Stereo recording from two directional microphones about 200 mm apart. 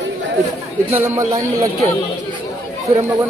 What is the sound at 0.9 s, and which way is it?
Speech, 10° right (ahead or behind).